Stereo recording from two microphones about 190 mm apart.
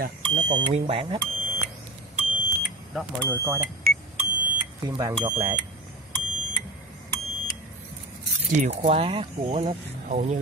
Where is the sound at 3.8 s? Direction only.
50° right (ahead or behind).